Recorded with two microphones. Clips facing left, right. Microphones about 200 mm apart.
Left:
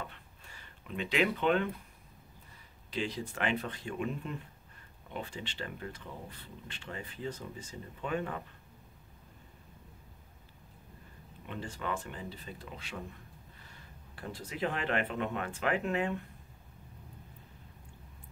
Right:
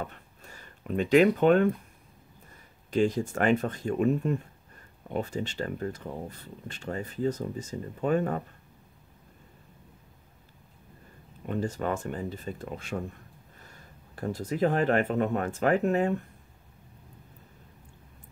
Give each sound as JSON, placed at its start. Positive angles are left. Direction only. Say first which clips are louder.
{"t": 0.0, "sound": "a sound", "louder": "right 7 dB", "side_deg": -45}
{"t": 2.9, "sound": "speech", "louder": "right 11 dB", "side_deg": -45}
{"t": 11.4, "sound": "speech", "louder": "right 9 dB", "side_deg": -45}